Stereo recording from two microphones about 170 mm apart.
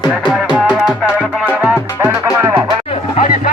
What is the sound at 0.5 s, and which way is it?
Music, 5° right (ahead or behind).